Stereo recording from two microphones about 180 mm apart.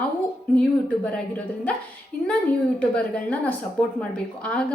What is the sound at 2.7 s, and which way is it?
A woman's voice, 5° left (ahead or behind).